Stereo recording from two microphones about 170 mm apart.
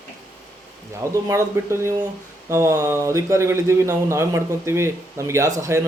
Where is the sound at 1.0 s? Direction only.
15° right (ahead or behind).